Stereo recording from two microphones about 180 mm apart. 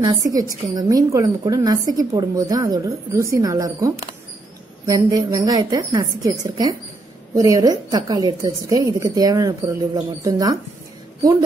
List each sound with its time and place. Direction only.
0.0 s a woman's voice: 20° right (ahead or behind)